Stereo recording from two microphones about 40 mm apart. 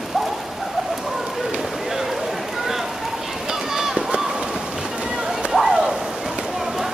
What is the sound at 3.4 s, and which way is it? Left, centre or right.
Run, centre.